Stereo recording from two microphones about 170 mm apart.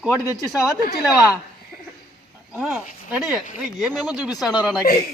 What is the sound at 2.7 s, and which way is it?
A man's voice, 5° right (ahead or behind).